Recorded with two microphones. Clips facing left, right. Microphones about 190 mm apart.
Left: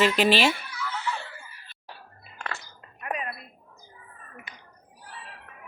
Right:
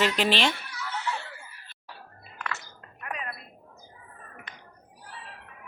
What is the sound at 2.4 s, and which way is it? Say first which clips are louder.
Chink: even; 30° left (ahead or behind).